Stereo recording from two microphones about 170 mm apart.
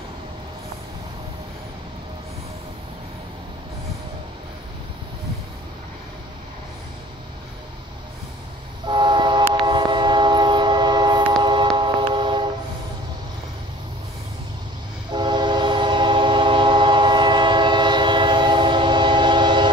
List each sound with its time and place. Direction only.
8.8 s train: 25° right (ahead or behind)
15.0 s train: 25° right (ahead or behind)